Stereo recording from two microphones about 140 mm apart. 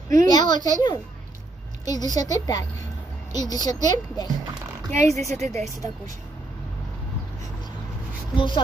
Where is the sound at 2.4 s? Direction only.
25° left (ahead or behind).